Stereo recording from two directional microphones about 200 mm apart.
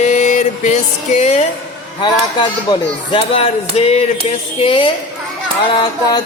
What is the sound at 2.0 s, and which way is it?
Speech, 20° left (ahead or behind).